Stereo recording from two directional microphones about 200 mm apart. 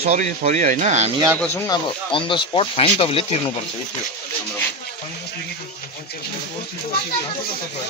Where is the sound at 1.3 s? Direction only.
10° left (ahead or behind); by 3.4 s 30° left (ahead or behind).